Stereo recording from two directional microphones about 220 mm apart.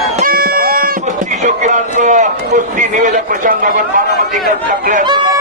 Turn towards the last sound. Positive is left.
turn(degrees=-35)  # may be behind; listen again after turning